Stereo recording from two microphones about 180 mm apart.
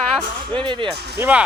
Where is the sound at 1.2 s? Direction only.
10° right (ahead or behind).